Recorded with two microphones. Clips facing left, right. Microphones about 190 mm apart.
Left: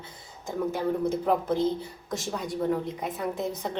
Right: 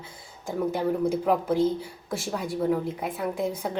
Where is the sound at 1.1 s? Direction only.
5° right (ahead or behind).